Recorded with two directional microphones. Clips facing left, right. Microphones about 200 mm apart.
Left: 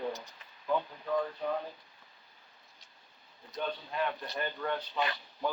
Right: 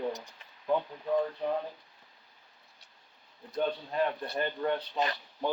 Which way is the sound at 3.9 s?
35° right (ahead or behind).